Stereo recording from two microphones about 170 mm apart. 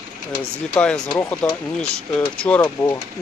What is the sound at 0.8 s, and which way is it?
Speech, 5° left (ahead or behind).